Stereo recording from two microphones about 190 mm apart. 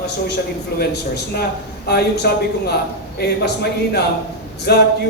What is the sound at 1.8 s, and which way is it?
Speech, 55° left (ahead or behind).